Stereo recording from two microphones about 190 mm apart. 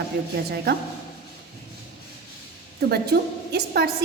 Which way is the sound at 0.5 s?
60° right (ahead or behind).